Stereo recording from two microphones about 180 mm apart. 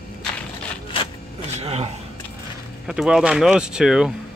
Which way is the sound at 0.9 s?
30° left (ahead or behind).